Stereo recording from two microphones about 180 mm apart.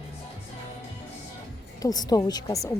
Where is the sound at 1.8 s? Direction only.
20° left (ahead or behind).